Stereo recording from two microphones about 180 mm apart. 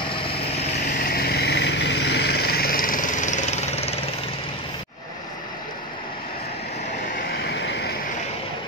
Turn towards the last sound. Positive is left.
turn(degrees=70)  # may be behind; listen again after turning